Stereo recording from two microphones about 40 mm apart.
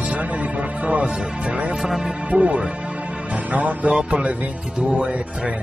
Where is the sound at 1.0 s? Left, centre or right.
Centre.